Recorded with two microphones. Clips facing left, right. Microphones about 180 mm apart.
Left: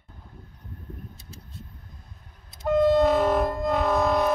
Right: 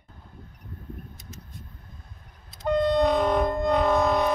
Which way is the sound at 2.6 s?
5° left (ahead or behind).